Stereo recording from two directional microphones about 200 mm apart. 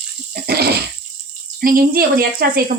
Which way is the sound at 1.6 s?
45° right (ahead or behind).